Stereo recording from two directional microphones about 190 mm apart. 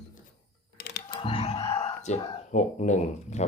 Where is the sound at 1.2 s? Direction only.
30° left (ahead or behind).